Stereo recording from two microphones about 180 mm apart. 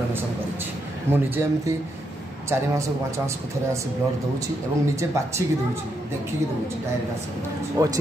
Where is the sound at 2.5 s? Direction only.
15° right (ahead or behind).